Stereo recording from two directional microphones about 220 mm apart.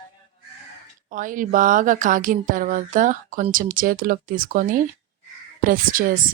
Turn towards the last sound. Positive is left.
turn(degrees=-40)  # may be behind; listen again after turning